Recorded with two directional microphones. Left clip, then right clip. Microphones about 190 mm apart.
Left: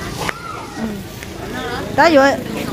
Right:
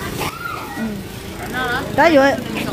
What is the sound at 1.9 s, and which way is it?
Speech, 10° right (ahead or behind).